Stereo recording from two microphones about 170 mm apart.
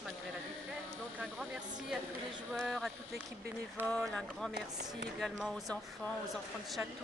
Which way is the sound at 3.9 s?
5° left (ahead or behind).